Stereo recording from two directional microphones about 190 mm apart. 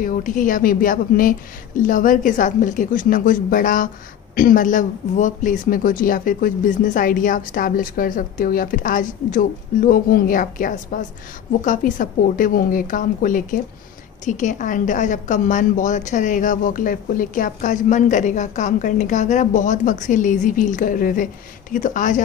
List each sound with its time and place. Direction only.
0.0 s a woman's voice: 45° left (ahead or behind)